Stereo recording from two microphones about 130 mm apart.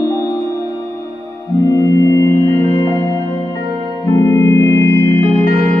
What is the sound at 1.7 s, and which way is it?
Music, 25° left (ahead or behind).